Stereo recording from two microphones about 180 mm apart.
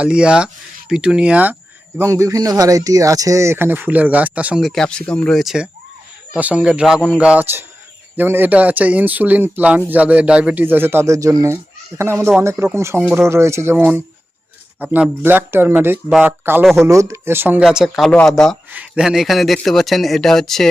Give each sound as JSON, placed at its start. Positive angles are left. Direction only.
{"t": 0.0, "sound": "speech", "side_deg": -5}